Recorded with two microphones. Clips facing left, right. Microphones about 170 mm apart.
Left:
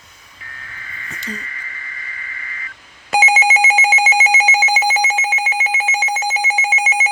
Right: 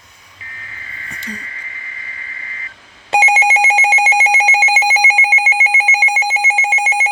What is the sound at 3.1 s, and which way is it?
Telephone bell ringing, 30° right (ahead or behind).